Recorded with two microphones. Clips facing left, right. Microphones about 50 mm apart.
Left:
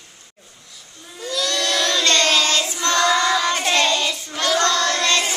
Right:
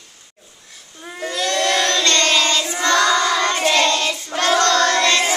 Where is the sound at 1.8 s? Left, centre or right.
Centre.